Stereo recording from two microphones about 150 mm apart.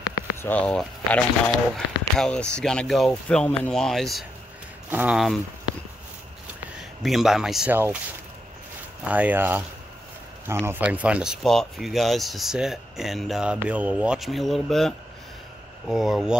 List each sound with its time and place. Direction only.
0.0 s a sound: 25° left (ahead or behind)
0.5 s speech: 10° left (ahead or behind)
4.8 s speech: 10° right (ahead or behind)
6.8 s speech: centre (ahead or behind)
7.7 s speech: 15° right (ahead or behind)
9.0 s speech: 10° right (ahead or behind)